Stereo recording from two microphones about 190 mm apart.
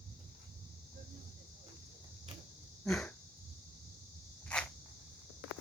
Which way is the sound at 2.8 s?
Centre (ahead or behind).